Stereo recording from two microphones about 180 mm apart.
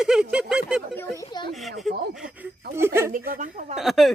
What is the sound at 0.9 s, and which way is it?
Speech, 15° left (ahead or behind).